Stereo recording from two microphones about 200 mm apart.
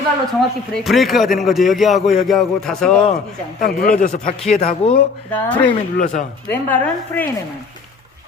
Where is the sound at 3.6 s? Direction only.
45° left (ahead or behind).